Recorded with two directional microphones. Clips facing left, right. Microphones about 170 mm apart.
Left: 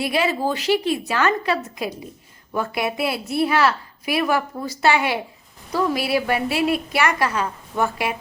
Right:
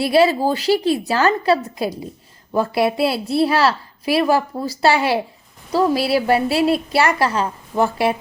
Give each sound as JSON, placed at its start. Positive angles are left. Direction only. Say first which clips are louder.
{"t": 0.0, "sound": "a woman's voice", "louder": "right 6 dB", "side_deg": -35}